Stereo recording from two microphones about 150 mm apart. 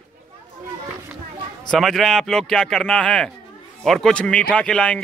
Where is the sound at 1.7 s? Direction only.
Centre (ahead or behind).